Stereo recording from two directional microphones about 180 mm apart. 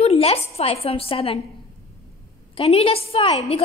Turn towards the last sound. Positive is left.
turn(degrees=30)  # may be behind; listen again after turning